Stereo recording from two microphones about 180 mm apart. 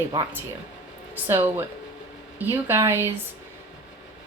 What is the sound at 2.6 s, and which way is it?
Speech, 15° right (ahead or behind).